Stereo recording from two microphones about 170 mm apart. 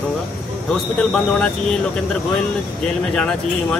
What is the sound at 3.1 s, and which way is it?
Speech, 5° left (ahead or behind).